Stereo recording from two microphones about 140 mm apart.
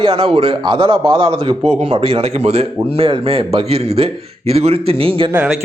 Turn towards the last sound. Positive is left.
turn(degrees=-40)  # may be behind; listen again after turning